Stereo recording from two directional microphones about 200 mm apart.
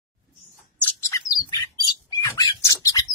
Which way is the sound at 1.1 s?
15° left (ahead or behind).